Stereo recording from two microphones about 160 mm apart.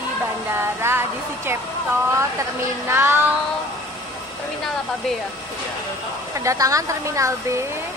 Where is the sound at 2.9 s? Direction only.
15° right (ahead or behind).